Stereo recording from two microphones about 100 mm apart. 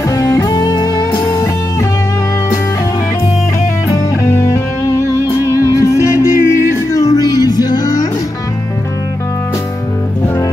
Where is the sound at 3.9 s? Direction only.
30° left (ahead or behind).